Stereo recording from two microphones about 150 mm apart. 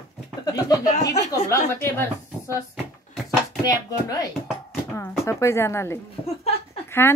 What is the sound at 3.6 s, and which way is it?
Speech, 25° left (ahead or behind).